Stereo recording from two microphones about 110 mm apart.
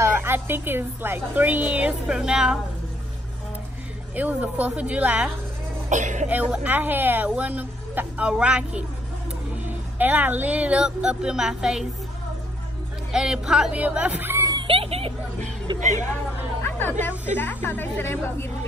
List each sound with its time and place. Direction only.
0.0 s a woman's voice: 20° right (ahead or behind)
4.1 s a woman's voice: 15° right (ahead or behind)
5.9 s speech: 90° right
6.2 s a woman's voice: 15° right (ahead or behind)
13.1 s a woman's voice: 5° right (ahead or behind)
14.6 s a sound: 55° right (ahead or behind)
15.8 s speech: 90° right
16.6 s a sound: 20° left (ahead or behind)
17.3 s a woman's voice: 15° left (ahead or behind)